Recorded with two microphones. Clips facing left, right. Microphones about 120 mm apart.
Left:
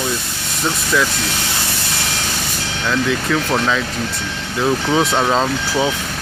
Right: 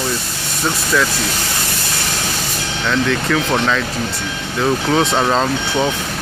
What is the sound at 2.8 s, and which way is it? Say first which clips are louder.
Speech: right 1 dB; 5° left (ahead or behind).